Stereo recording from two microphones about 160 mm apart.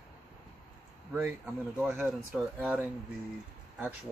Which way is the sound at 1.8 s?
10° right (ahead or behind).